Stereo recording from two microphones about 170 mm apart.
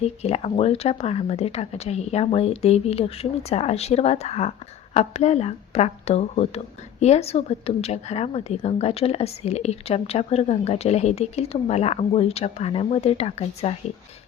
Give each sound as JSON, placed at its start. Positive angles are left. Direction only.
{"t": 0.0, "sound": "a woman's voice", "side_deg": 40}